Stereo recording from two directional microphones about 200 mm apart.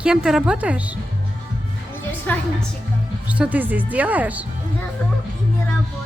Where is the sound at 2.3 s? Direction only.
5° left (ahead or behind).